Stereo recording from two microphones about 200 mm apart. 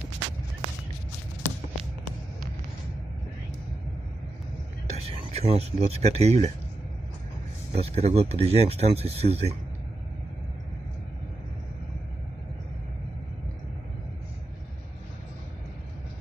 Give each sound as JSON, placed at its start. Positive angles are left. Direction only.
{"t": 4.8, "sound": "speech", "side_deg": -30}
{"t": 7.7, "sound": "speech", "side_deg": -30}